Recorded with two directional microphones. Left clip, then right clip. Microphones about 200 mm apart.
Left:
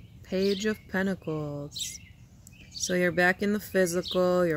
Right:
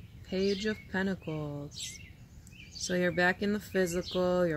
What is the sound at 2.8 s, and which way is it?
Speech, 40° left (ahead or behind).